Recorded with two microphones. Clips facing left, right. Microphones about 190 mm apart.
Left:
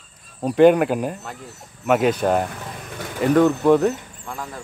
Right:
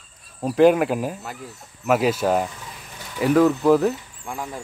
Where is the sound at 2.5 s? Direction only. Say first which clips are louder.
Left 7 dB; 55° left (ahead or behind).